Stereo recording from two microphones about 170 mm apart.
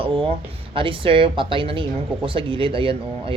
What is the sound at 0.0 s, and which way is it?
Speech, 30° right (ahead or behind).